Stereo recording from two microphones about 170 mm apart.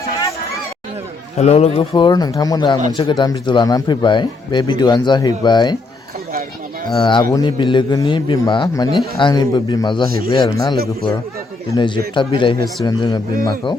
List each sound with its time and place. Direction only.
1.4 s speech: 40° left (ahead or behind)
6.9 s speech: 25° left (ahead or behind)